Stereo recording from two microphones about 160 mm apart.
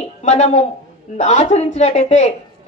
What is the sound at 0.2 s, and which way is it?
Speech, 45° left (ahead or behind).